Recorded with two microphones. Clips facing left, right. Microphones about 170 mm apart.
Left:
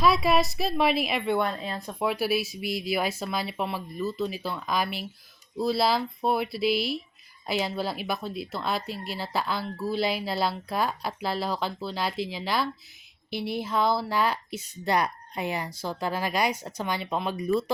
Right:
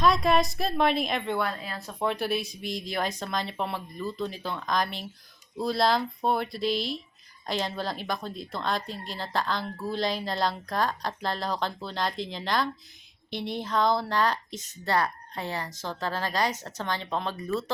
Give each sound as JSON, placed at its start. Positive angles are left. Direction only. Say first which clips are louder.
{"t": 0.0, "sound": "speech", "louder": "even", "side_deg": 5}
{"t": 1.4, "sound": "speech", "louder": "left 3 dB", "side_deg": 25}
{"t": 2.0, "sound": "a woman's voice", "louder": "left 2 dB", "side_deg": 5}